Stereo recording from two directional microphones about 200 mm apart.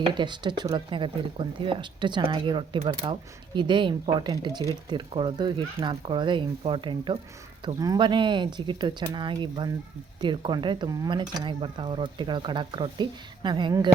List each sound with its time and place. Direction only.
0.1 s speech: 25° right (ahead or behind)